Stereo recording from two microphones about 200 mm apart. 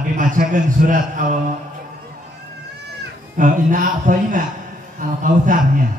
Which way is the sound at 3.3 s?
40° right (ahead or behind).